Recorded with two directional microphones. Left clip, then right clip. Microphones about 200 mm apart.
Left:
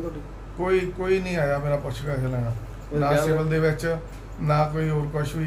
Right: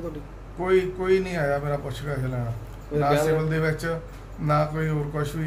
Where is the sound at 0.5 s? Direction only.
5° right (ahead or behind).